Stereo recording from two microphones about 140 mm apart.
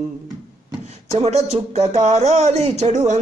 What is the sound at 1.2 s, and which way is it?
Speech, 50° right (ahead or behind).